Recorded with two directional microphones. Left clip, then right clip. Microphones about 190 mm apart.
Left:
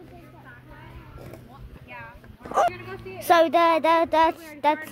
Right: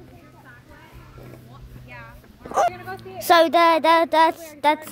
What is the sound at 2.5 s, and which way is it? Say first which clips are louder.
Speech: right 2 dB; 10° right (ahead or behind).